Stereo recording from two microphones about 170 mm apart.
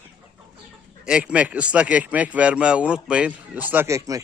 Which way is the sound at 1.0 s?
5° right (ahead or behind).